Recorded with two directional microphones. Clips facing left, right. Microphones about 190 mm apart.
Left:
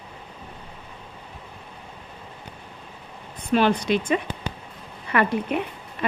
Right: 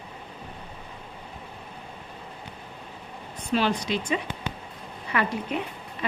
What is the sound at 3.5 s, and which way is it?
A woman's voice, 55° left (ahead or behind).